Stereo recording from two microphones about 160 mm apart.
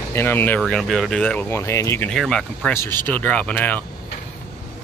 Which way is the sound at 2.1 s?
Centre (ahead or behind).